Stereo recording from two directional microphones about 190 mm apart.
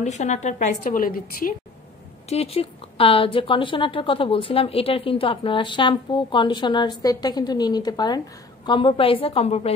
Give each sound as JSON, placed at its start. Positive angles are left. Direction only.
{"t": 0.0, "sound": "a woman's voice", "side_deg": 35}
{"t": 2.2, "sound": "a woman's voice", "side_deg": 30}